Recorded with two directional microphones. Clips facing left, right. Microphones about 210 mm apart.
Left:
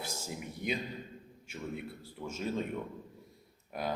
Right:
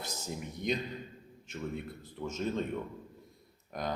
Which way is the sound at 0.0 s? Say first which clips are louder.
Right 1 dB; 10° left (ahead or behind).